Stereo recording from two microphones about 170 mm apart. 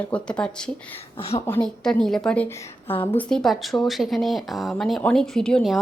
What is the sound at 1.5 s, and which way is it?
Speech, 10° left (ahead or behind).